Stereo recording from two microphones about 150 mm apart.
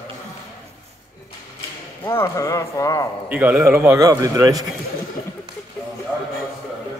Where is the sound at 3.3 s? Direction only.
10° right (ahead or behind).